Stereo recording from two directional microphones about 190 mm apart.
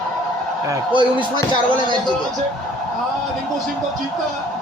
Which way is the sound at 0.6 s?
25° right (ahead or behind).